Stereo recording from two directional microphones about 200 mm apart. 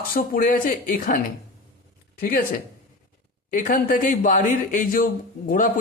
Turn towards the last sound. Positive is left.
turn(degrees=45)  # may be behind; listen again after turning